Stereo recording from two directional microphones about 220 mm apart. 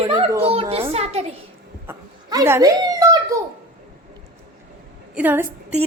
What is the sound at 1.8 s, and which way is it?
Speech, 15° right (ahead or behind).